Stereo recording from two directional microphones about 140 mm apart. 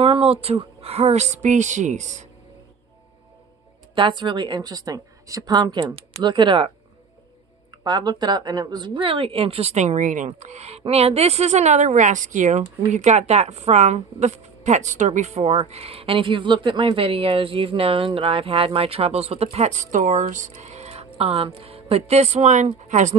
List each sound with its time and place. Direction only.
0.0 s speech: 45° right (ahead or behind)
3.9 s a woman's voice: 35° right (ahead or behind)
7.8 s speech: 30° right (ahead or behind); by 23.1 s 60° right (ahead or behind)